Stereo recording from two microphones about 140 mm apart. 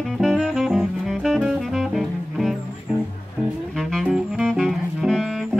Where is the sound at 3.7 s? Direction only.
Centre (ahead or behind).